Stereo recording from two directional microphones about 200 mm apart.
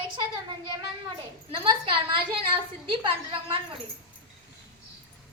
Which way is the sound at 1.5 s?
25° right (ahead or behind).